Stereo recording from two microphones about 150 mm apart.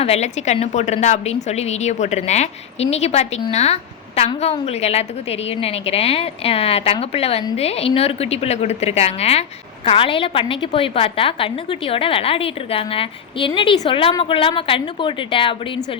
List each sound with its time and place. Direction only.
0.0 s a woman's voice: 45° left (ahead or behind)